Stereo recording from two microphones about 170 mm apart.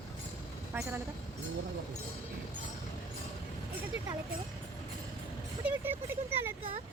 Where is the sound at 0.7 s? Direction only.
10° right (ahead or behind).